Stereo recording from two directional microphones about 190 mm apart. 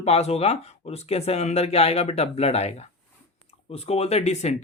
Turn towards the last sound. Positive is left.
turn(degrees=35)  # may be behind; listen again after turning